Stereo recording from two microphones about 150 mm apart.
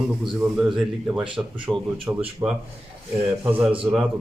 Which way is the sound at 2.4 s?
15° right (ahead or behind).